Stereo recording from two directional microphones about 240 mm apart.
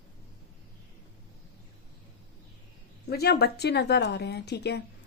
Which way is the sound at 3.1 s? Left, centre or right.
Left.